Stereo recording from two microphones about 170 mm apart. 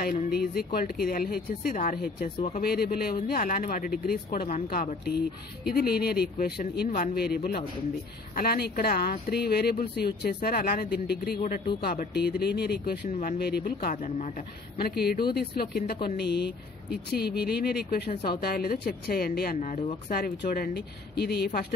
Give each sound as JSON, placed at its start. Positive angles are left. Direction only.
{"t": 0.3, "sound": "speech", "side_deg": 65}
{"t": 14.0, "sound": "a man's voice", "side_deg": 45}
{"t": 14.8, "sound": "speech", "side_deg": 65}
{"t": 19.6, "sound": "speech", "side_deg": 40}
{"t": 20.1, "sound": "speech", "side_deg": 60}